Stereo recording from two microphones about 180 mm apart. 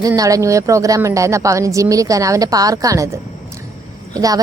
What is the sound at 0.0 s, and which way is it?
A woman's voice, 20° right (ahead or behind).